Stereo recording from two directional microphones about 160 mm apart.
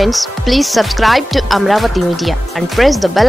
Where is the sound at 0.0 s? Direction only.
Centre (ahead or behind).